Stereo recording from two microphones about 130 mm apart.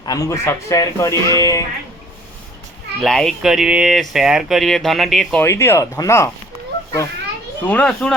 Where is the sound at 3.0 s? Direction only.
5° left (ahead or behind).